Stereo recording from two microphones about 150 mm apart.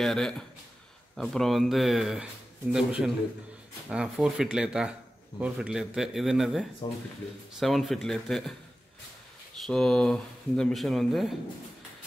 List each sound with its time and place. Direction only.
0.0 s speech: centre (ahead or behind)
6.8 s speech: 30° left (ahead or behind)
7.5 s speech: centre (ahead or behind)
9.6 s speech: centre (ahead or behind)